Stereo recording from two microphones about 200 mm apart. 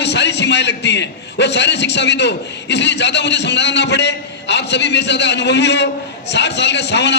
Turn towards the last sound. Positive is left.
turn(degrees=60)  # may be behind; listen again after turning